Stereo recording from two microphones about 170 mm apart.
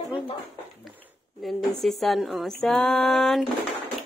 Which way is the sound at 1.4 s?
Centre (ahead or behind).